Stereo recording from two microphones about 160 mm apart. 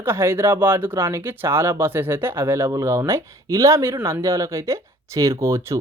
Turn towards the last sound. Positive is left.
turn(degrees=-15)  # may be behind; listen again after turning